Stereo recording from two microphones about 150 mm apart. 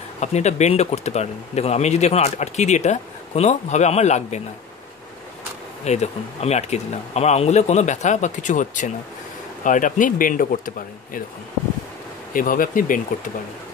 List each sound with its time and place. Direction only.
0.2 s speech: 50° left (ahead or behind)
5.9 s speech: 45° left (ahead or behind); by 10.7 s 65° left (ahead or behind)
12.4 s speech: 65° left (ahead or behind)